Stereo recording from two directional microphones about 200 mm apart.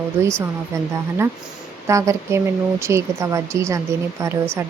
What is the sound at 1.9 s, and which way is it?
Speech, 15° right (ahead or behind).